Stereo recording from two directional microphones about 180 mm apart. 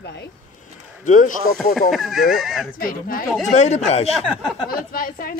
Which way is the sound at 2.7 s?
50° left (ahead or behind).